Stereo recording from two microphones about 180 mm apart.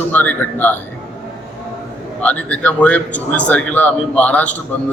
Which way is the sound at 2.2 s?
5° left (ahead or behind).